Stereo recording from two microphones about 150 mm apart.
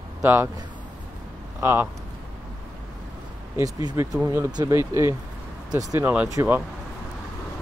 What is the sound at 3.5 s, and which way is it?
Speech, 25° right (ahead or behind).